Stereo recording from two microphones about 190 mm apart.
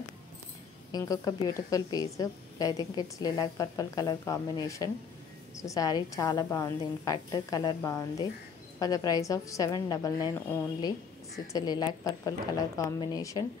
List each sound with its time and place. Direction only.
0.9 s a woman's voice: 20° left (ahead or behind)